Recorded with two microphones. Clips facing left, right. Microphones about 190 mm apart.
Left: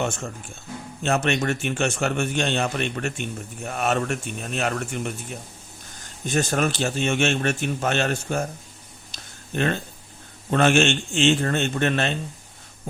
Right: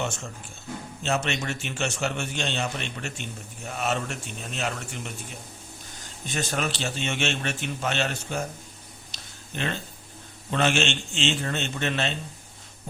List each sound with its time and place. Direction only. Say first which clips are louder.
0.0 s a man's voice: left 4 dB; 55° left (ahead or behind)
6.2 s a man's voice: left 6 dB; 45° left (ahead or behind)
9.1 s a sound: left 8 dB; 50° left (ahead or behind)
10.5 s a man's voice: left 6 dB; 50° left (ahead or behind)